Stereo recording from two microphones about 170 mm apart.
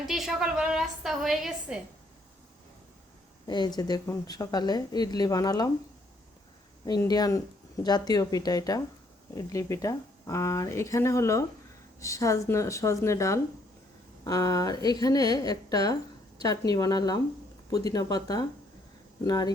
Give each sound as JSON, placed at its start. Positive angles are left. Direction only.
{"t": 0.0, "sound": "a woman's voice", "side_deg": 0}
{"t": 3.4, "sound": "speech", "side_deg": 25}
{"t": 6.8, "sound": "speech", "side_deg": 20}